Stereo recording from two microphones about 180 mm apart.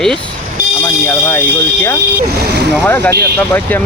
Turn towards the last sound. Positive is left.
turn(degrees=10)  # may be behind; listen again after turning